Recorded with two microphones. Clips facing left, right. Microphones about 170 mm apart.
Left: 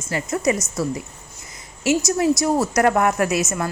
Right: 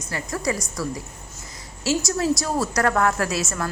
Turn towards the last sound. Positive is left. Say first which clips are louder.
# left 4 dB
turn(degrees=15)  # may be behind; listen again after turning